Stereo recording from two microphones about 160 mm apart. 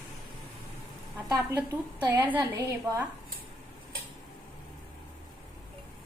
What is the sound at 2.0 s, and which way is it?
A woman's voice, 10° right (ahead or behind).